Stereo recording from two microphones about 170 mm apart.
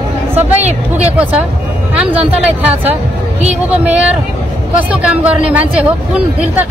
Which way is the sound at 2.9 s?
40° right (ahead or behind).